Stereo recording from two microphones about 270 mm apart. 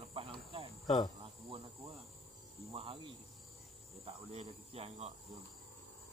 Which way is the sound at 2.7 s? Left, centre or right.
Centre.